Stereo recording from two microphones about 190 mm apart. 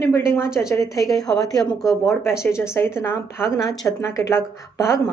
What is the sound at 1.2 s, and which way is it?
Speech, centre (ahead or behind).